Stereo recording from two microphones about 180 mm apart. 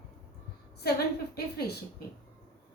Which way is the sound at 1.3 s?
60° left (ahead or behind).